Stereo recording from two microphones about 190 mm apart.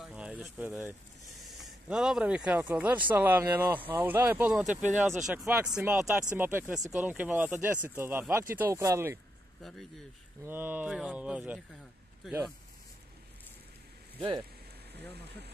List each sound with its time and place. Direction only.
0.0 s a sound: 5° right (ahead or behind)
1.6 s speech: 5° right (ahead or behind)
9.6 s speech: centre (ahead or behind)
10.4 s speech: 10° right (ahead or behind)
15.1 s speech: 60° right (ahead or behind)